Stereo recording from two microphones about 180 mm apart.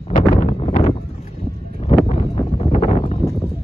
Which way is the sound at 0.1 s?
40° left (ahead or behind).